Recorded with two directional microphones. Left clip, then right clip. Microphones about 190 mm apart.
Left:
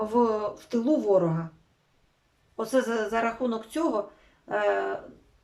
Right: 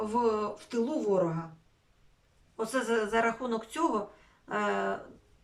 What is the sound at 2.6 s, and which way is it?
Speech, 30° left (ahead or behind).